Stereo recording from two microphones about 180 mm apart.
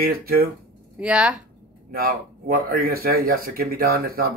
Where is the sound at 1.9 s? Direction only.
55° right (ahead or behind).